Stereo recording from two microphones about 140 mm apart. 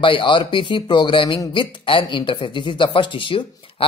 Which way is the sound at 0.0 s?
35° left (ahead or behind).